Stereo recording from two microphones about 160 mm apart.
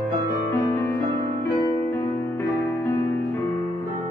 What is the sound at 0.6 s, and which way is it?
Music, 15° left (ahead or behind).